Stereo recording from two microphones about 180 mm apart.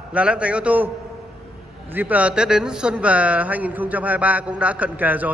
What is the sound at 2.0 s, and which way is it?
A man's voice, 10° right (ahead or behind).